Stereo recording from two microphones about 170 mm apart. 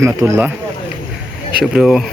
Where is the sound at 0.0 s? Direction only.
15° right (ahead or behind).